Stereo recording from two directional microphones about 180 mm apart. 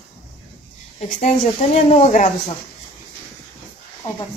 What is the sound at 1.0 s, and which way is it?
Speech, 40° left (ahead or behind).